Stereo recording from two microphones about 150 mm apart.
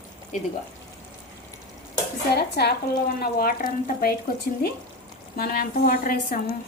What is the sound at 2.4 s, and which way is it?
Speech, 90° left.